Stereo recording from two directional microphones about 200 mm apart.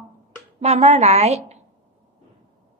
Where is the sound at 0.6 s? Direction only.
30° right (ahead or behind).